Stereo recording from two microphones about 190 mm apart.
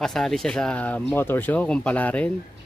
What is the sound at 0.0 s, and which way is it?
Speech, centre (ahead or behind).